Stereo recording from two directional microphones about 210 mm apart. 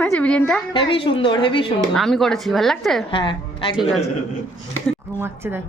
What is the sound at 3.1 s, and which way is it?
Speech, 25° left (ahead or behind).